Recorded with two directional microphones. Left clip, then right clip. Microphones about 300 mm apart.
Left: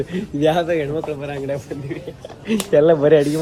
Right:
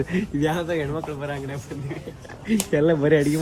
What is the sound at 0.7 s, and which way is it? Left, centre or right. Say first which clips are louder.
Speech: left 5 dB; centre.